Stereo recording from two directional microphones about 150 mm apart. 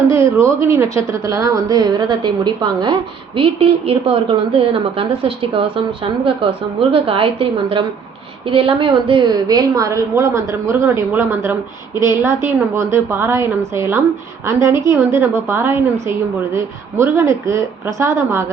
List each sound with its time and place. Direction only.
0.1 s a woman's voice: 20° right (ahead or behind)